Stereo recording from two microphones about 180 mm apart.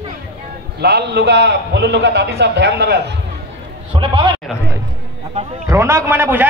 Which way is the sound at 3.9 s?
25° right (ahead or behind).